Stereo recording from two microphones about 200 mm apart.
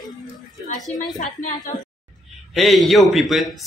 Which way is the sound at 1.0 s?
40° left (ahead or behind).